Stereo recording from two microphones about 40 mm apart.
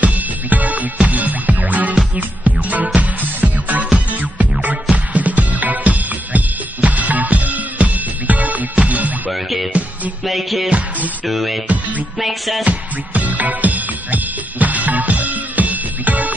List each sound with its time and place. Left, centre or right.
0.0 s music: right
9.3 s music: centre
12.6 s music: right